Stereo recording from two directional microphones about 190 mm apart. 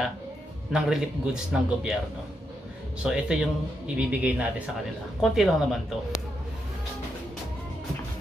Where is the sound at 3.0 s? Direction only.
5° right (ahead or behind).